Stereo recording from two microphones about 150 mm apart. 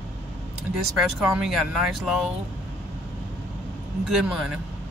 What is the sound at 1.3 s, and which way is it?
Speech, 5° right (ahead or behind).